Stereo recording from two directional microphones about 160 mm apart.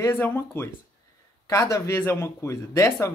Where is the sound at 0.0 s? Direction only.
15° left (ahead or behind).